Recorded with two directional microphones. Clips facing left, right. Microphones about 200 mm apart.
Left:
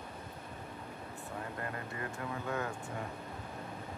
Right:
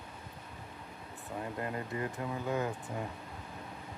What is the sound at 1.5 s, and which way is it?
Speech, 20° right (ahead or behind).